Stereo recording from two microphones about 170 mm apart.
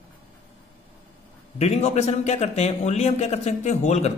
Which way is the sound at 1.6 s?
40° left (ahead or behind).